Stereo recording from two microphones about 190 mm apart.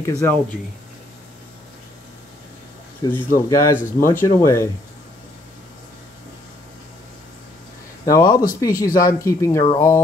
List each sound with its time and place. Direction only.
0.0 s speech: 15° left (ahead or behind)
3.0 s speech: 15° left (ahead or behind)
8.0 s speech: 20° left (ahead or behind)